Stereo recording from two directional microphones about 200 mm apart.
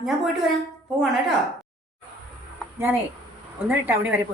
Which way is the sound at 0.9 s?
5° right (ahead or behind).